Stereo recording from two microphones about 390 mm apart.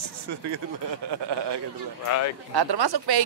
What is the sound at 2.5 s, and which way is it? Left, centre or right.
Speech, right.